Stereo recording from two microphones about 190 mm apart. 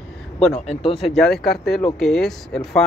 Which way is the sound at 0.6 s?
35° left (ahead or behind).